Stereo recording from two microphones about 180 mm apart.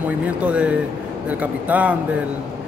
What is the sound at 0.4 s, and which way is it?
Speech, 5° right (ahead or behind).